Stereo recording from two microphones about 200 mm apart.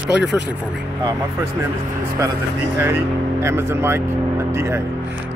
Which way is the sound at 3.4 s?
10° right (ahead or behind).